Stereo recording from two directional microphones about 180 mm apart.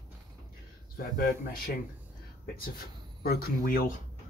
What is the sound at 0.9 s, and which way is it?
Speech, 55° left (ahead or behind).